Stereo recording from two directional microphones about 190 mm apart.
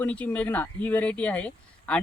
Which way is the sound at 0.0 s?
10° left (ahead or behind).